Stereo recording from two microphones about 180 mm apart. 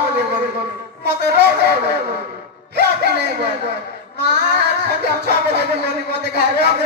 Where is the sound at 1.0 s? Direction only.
70° right (ahead or behind).